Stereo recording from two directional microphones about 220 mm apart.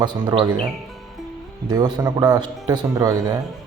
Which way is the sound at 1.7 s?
20° right (ahead or behind).